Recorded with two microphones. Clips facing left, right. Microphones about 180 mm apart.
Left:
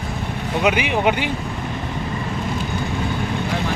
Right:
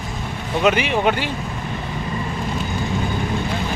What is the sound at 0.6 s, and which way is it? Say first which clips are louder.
Speech: right 1 dB; 15° left (ahead or behind).